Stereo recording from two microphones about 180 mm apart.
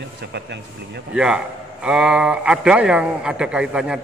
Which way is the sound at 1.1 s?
5° right (ahead or behind).